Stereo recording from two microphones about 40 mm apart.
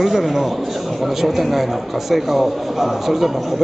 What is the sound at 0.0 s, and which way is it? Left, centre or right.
Speech, centre.